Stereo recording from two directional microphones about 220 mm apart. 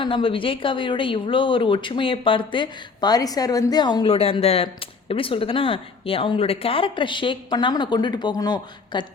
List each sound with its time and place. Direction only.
0.0 s speech: 25° left (ahead or behind)